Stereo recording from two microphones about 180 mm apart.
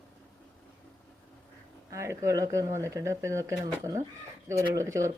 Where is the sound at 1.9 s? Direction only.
15° right (ahead or behind).